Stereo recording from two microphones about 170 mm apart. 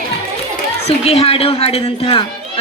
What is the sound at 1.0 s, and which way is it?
Music, 35° left (ahead or behind).